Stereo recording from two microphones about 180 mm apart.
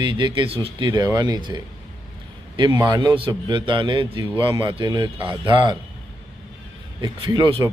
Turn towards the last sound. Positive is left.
turn(degrees=-25)  # may be behind; listen again after turning